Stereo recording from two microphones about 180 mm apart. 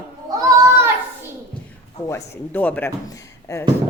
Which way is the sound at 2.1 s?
10° left (ahead or behind).